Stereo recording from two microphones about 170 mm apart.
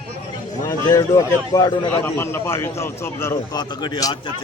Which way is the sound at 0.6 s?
20° left (ahead or behind).